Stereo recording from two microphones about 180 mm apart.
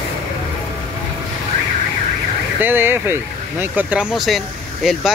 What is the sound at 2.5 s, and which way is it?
Speech, 10° right (ahead or behind).